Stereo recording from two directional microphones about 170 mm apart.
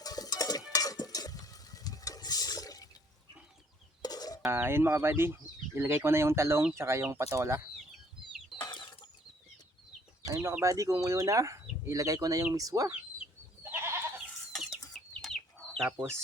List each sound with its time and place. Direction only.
0.0 s a sound: 20° left (ahead or behind)
4.0 s a sound: 20° left (ahead or behind)
4.4 s speech: 15° right (ahead or behind)
8.6 s chicken: 25° left (ahead or behind)
10.3 s speech: 15° right (ahead or behind)
13.7 s goat: 15° right (ahead or behind)
15.2 s chicken: centre (ahead or behind)
15.9 s speech: 15° right (ahead or behind)